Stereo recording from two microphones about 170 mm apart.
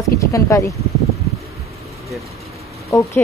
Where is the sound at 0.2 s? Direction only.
20° left (ahead or behind).